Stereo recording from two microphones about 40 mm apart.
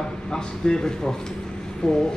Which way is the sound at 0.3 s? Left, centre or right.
Left.